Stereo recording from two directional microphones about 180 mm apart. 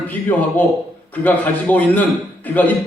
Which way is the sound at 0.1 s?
10° left (ahead or behind).